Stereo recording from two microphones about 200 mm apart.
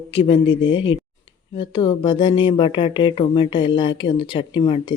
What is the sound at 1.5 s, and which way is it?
Speech, 25° left (ahead or behind).